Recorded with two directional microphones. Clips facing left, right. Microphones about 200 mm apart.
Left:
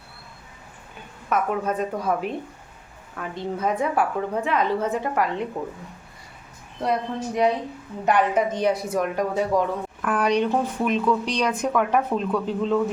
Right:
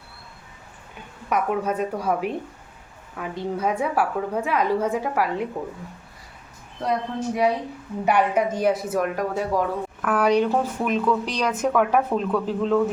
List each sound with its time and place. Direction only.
1.3 s a woman's voice: 10° right (ahead or behind)
6.8 s a woman's voice: centre (ahead or behind)